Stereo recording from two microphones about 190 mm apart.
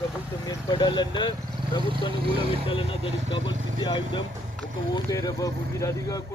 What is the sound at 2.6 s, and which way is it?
Speech, 30° left (ahead or behind).